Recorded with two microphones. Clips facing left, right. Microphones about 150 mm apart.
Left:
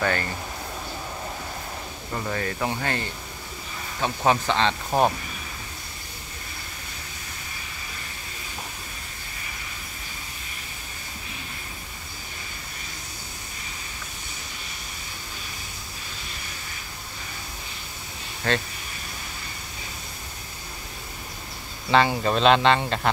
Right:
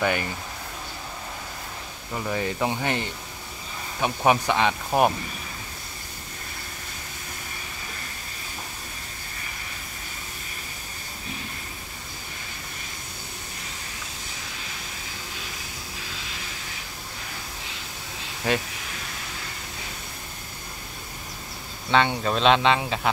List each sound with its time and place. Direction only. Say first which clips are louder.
0.0 s speech: right 1 dB; 15° right (ahead or behind)
2.1 s speech: right 1 dB; 5° right (ahead or behind)
2.4 s speech: right 2 dB; 15° right (ahead or behind)
18.4 s speech: even; 10° right (ahead or behind)
21.8 s speech: left 2 dB; centre (ahead or behind)